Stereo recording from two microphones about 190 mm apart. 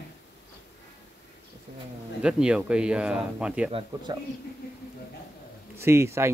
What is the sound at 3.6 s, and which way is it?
Speech, 30° right (ahead or behind).